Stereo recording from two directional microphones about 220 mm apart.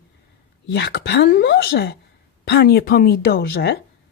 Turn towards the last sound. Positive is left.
turn(degrees=50)  # may be behind; listen again after turning